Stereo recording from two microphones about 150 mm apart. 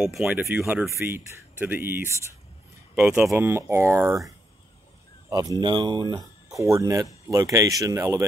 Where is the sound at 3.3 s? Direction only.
15° right (ahead or behind).